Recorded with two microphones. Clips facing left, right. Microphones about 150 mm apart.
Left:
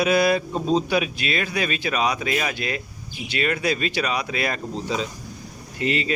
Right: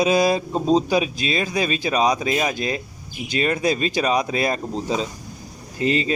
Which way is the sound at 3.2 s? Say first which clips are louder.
Right 3 dB; 35° right (ahead or behind).